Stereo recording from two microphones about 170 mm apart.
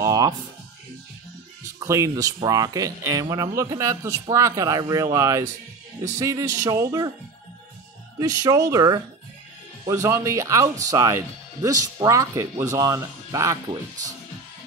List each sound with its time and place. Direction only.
0.0 s music: 20° right (ahead or behind)
1.8 s speech: 20° right (ahead or behind)
8.2 s speech: 20° right (ahead or behind)